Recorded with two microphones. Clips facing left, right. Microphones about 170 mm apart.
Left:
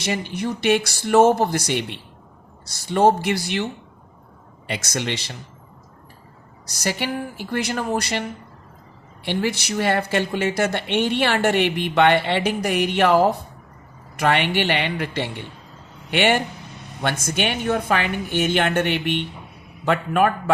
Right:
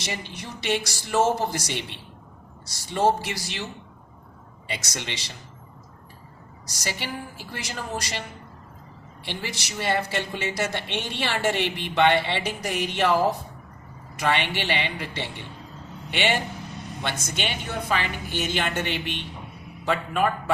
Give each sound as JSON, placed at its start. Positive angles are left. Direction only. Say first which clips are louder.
{"t": 0.0, "sound": "speech", "louder": "left 9 dB", "side_deg": 55}
{"t": 4.7, "sound": "speech", "louder": "left 7 dB", "side_deg": 60}
{"t": 6.7, "sound": "speech", "louder": "left 7 dB", "side_deg": 60}
{"t": 9.2, "sound": "speech", "louder": "left 10 dB", "side_deg": 60}